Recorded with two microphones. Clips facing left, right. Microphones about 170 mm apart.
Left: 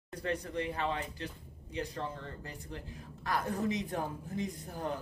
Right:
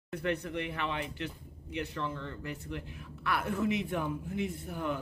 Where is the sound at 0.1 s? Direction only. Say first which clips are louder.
Right 2 dB; 35° left (ahead or behind).